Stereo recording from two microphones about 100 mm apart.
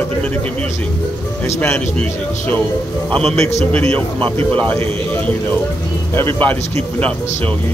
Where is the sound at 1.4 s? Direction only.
25° left (ahead or behind).